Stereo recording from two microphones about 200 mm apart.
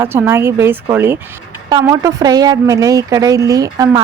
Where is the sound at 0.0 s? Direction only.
10° right (ahead or behind).